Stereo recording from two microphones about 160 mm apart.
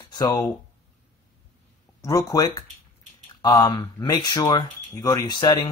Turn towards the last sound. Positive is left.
turn(degrees=25)  # may be behind; listen again after turning